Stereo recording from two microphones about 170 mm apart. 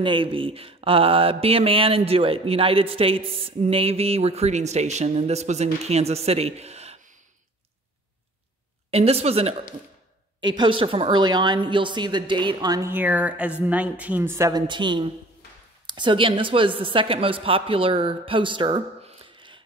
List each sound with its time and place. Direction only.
0.0 s speech: 30° right (ahead or behind)
8.9 s a woman's voice: 35° right (ahead or behind); by 14.6 s 15° right (ahead or behind)
14.7 s a woman's voice: 25° right (ahead or behind)